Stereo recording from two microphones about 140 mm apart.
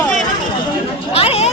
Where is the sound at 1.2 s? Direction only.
45° left (ahead or behind).